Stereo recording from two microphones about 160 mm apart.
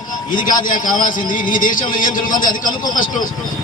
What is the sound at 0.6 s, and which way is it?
A man's voice, 55° left (ahead or behind).